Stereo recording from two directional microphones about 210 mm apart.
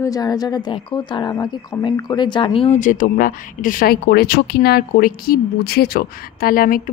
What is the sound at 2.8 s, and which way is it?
Speech, 40° left (ahead or behind).